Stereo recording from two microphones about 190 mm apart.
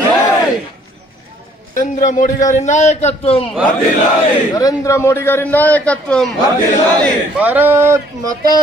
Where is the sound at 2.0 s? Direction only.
40° left (ahead or behind).